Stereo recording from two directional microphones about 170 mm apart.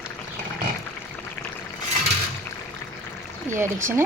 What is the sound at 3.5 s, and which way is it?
Speech, 15° right (ahead or behind).